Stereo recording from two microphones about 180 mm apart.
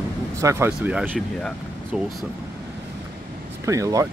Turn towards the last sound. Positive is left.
turn(degrees=-20)  # may be behind; listen again after turning